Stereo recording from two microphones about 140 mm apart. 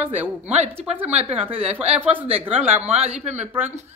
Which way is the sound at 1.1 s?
50° right (ahead or behind).